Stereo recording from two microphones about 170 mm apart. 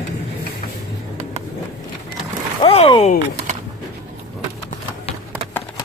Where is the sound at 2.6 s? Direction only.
30° left (ahead or behind).